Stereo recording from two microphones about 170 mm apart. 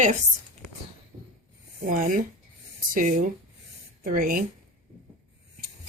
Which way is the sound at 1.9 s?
50° right (ahead or behind).